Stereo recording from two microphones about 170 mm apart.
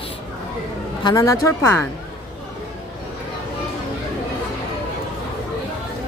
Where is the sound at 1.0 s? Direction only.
20° left (ahead or behind).